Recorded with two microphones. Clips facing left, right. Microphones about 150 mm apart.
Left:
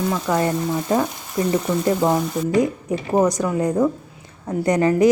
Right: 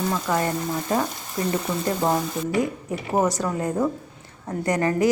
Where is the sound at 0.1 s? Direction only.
10° left (ahead or behind).